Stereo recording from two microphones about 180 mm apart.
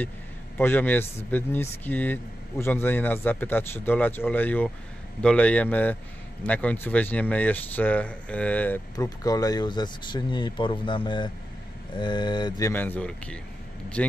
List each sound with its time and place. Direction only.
0.6 s speech: 10° left (ahead or behind)